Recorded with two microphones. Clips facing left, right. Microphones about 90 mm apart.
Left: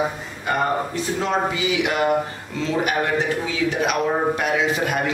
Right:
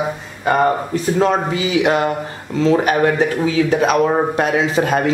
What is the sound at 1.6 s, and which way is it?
A man's voice, 35° right (ahead or behind).